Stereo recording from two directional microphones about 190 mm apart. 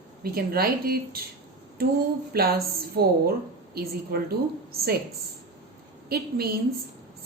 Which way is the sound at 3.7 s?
55° right (ahead or behind).